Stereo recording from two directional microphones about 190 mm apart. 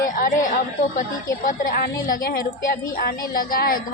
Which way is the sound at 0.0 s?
45° left (ahead or behind).